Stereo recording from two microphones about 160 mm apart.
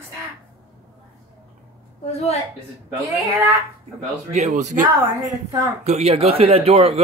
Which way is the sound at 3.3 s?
20° right (ahead or behind).